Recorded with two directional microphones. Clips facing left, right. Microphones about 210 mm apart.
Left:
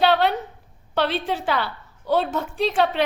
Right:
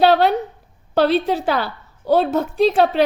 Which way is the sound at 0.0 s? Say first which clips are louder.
Right 5 dB; 40° right (ahead or behind).